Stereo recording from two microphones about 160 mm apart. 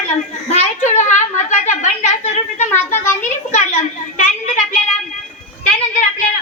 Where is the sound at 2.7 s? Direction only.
15° left (ahead or behind).